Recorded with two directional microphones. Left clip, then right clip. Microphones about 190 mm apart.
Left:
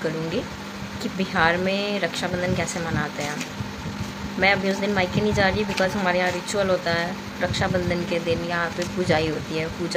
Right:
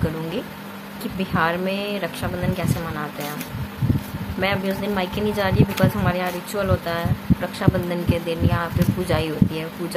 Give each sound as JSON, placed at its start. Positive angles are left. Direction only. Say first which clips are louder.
{"t": 1.3, "sound": "speech", "louder": "left 1 dB", "side_deg": -5}
{"t": 4.4, "sound": "speech", "louder": "left 3 dB", "side_deg": -5}